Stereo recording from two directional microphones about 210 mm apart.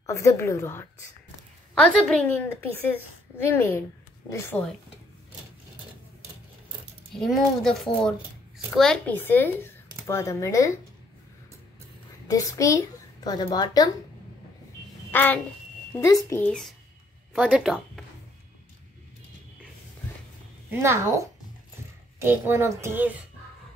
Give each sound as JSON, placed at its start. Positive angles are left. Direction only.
{"t": 0.0, "sound": "speech", "side_deg": 15}
{"t": 7.2, "sound": "speech", "side_deg": 0}
{"t": 12.3, "sound": "a child's voice", "side_deg": 15}
{"t": 15.0, "sound": "a child's voice", "side_deg": 10}
{"t": 20.8, "sound": "a child's voice", "side_deg": -15}